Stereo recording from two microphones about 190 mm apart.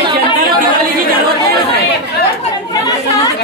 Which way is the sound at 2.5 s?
20° left (ahead or behind).